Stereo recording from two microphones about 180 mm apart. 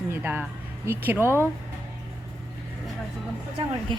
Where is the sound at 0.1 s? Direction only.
10° right (ahead or behind).